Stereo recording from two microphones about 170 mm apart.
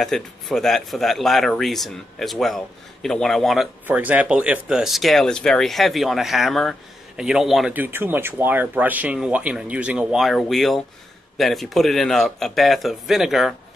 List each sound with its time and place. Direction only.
0.0 s speech: centre (ahead or behind)
3.8 s speech: 10° right (ahead or behind)